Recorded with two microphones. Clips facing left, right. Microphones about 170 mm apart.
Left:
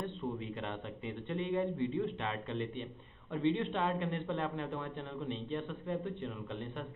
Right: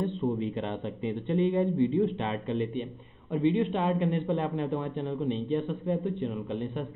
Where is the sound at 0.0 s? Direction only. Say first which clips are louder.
Right 10 dB; 25° right (ahead or behind).